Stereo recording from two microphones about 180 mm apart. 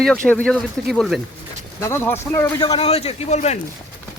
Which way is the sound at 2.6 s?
35° left (ahead or behind).